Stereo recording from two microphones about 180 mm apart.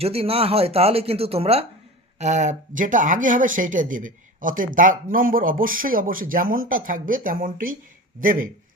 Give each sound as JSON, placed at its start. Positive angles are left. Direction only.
{"t": 0.0, "sound": "speech", "side_deg": -35}